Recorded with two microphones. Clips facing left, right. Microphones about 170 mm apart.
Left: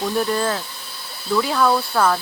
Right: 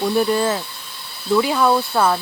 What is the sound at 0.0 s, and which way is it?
Speech, 10° right (ahead or behind).